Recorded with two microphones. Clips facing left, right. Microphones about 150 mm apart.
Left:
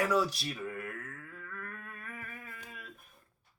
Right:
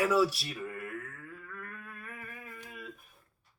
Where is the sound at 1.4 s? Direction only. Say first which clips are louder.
Left 1 dB; 5° right (ahead or behind).